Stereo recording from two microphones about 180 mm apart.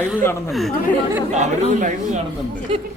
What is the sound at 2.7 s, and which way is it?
Speech, 30° right (ahead or behind).